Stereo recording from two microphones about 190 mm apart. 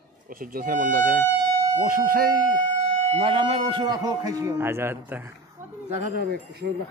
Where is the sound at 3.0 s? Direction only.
35° right (ahead or behind); by 5.7 s 10° right (ahead or behind).